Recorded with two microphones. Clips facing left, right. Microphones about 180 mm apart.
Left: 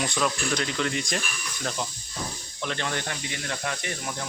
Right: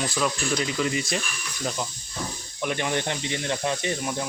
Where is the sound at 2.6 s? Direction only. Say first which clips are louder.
Right 4 dB; 15° right (ahead or behind).